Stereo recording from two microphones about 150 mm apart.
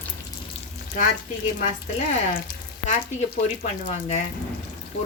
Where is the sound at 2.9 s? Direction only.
45° left (ahead or behind).